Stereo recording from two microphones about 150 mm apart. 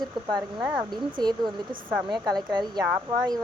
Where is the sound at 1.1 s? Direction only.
30° right (ahead or behind).